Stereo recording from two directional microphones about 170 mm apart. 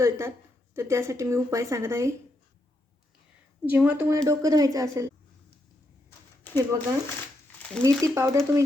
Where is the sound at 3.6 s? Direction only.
10° right (ahead or behind).